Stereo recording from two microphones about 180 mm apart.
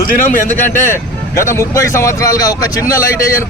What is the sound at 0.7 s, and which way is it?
Speech, 15° left (ahead or behind).